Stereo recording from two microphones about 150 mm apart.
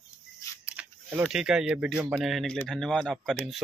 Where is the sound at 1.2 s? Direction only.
5° right (ahead or behind).